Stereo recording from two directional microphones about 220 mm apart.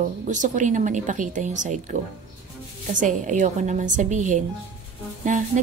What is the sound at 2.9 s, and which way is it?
A woman's voice, 35° right (ahead or behind).